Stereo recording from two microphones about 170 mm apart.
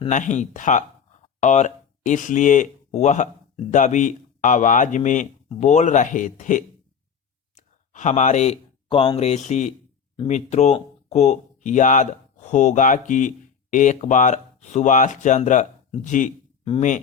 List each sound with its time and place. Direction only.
0.1 s speech: 45° left (ahead or behind)